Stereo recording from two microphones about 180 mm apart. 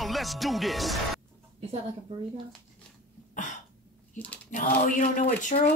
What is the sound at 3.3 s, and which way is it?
Cough, 45° left (ahead or behind).